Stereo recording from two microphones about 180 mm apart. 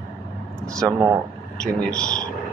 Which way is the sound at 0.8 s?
15° right (ahead or behind).